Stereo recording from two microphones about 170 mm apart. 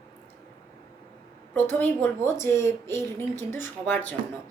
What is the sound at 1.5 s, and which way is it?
A woman's voice, 10° left (ahead or behind).